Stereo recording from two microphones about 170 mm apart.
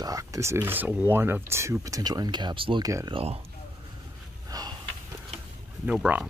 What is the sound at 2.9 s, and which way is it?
Speech, 20° right (ahead or behind).